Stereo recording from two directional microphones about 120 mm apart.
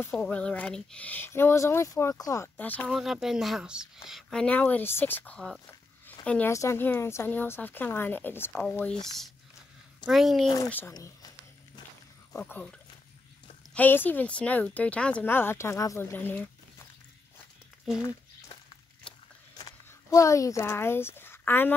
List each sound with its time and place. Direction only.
0.1 s speech: 5° left (ahead or behind)
2.9 s speech: 5° right (ahead or behind)
6.5 s speech: 25° left (ahead or behind)
10.0 s speech: centre (ahead or behind)
10.7 s speech: 15° left (ahead or behind)
11.0 s a sound: 30° left (ahead or behind)
12.4 s speech: 15° left (ahead or behind)
13.7 s speech: 15° left (ahead or behind)
19.5 s speech: 30° left (ahead or behind); by 21.7 s 15° left (ahead or behind)